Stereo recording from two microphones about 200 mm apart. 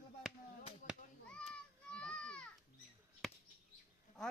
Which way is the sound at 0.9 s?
5° left (ahead or behind).